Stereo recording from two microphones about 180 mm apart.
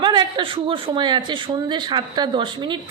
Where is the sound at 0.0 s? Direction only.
25° right (ahead or behind).